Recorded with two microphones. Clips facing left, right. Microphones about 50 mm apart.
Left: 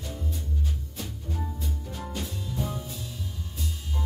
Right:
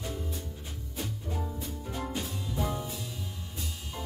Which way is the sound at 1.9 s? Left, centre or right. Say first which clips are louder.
Right 3 dB; right.